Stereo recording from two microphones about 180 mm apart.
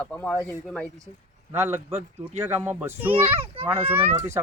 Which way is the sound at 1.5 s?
15° right (ahead or behind).